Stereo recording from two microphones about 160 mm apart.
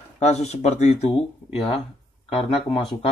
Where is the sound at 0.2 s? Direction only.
45° left (ahead or behind).